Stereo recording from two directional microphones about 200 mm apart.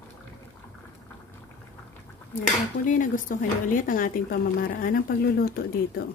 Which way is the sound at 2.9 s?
40° left (ahead or behind).